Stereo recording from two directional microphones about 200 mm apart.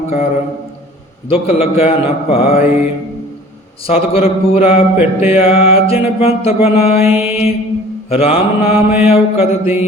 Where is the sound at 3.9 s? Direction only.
30° left (ahead or behind).